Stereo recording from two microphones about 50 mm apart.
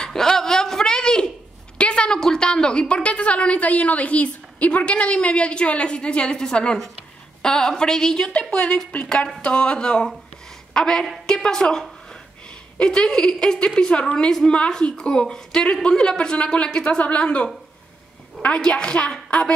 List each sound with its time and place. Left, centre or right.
0.0 s a sound: centre
1.8 s a woman's voice: left
17.0 s a woman's voice: left